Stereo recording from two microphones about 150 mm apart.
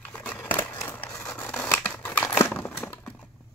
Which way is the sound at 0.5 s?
15° left (ahead or behind).